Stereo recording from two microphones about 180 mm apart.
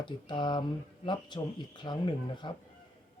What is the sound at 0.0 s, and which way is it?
Speech, 25° left (ahead or behind).